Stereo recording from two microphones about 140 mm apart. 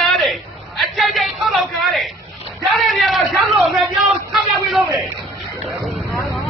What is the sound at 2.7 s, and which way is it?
A man's voice, centre (ahead or behind).